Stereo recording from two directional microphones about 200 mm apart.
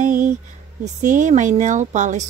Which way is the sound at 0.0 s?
40° right (ahead or behind).